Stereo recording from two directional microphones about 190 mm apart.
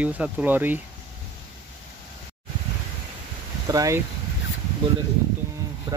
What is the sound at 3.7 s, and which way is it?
Speech, 20° right (ahead or behind).